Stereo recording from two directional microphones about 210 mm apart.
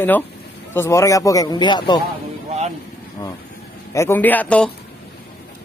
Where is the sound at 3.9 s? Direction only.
10° left (ahead or behind).